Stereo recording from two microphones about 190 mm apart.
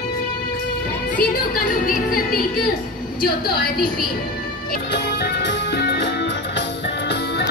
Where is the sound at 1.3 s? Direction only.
50° left (ahead or behind).